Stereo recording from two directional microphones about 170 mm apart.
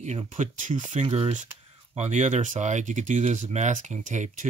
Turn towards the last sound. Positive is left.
turn(degrees=-45)  # may be behind; listen again after turning